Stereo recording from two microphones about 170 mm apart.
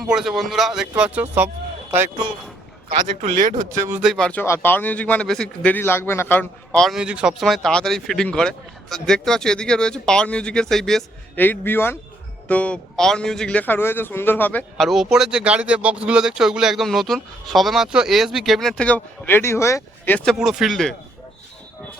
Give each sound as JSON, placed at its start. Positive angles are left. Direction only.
{"t": 0.0, "sound": "a man's voice", "side_deg": 0}
{"t": 3.2, "sound": "speech", "side_deg": -50}
{"t": 3.8, "sound": "speech", "side_deg": -15}
{"t": 4.0, "sound": "a man's voice", "side_deg": 0}
{"t": 14.8, "sound": "a man's voice", "side_deg": 0}
{"t": 20.4, "sound": "a man's voice", "side_deg": -5}